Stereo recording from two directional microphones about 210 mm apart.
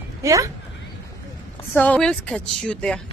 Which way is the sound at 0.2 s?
15° right (ahead or behind).